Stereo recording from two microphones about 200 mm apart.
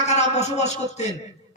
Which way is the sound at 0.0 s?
35° left (ahead or behind).